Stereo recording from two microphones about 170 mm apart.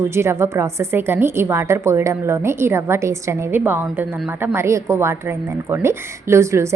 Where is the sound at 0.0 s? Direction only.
15° right (ahead or behind).